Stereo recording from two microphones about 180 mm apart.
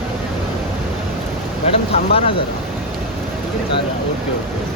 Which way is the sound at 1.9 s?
30° left (ahead or behind).